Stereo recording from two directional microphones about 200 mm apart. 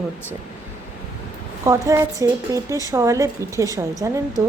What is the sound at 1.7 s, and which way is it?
A woman's voice, 15° right (ahead or behind).